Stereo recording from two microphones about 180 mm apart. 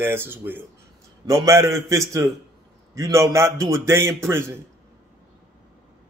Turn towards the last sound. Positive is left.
turn(degrees=-15)  # may be behind; listen again after turning